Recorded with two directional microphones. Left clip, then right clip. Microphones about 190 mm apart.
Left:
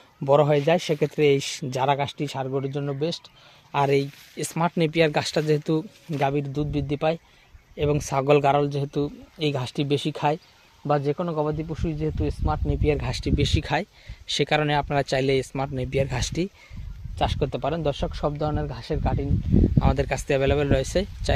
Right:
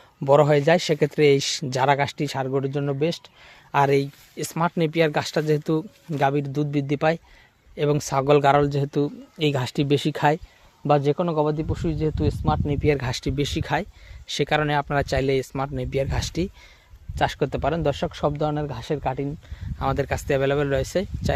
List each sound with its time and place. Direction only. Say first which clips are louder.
0.3 s speech: right 2 dB; 15° right (ahead or behind)
3.7 s speech: right 2 dB; 15° right (ahead or behind)
7.8 s speech: right 2 dB; 15° right (ahead or behind)
8.6 s speech: right 3 dB; 30° right (ahead or behind); by 16.5 s centre (ahead or behind)
17.2 s speech: right 2 dB; 25° right (ahead or behind)
19.8 s speech: right 1 dB; 10° right (ahead or behind)